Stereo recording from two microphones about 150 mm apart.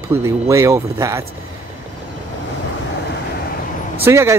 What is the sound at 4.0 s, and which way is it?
Speech, 15° right (ahead or behind).